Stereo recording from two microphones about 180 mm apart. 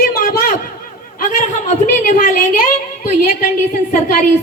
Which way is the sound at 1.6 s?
40° left (ahead or behind).